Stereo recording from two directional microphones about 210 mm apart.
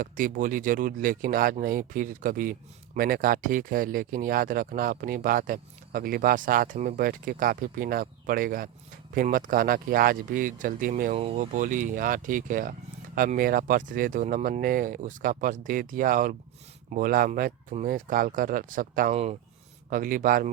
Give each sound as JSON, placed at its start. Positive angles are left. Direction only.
{"t": 0.0, "sound": "speech", "side_deg": -40}
{"t": 19.9, "sound": "speech", "side_deg": -40}